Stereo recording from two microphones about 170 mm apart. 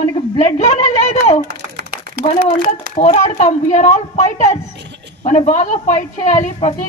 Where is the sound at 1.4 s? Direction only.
65° right (ahead or behind).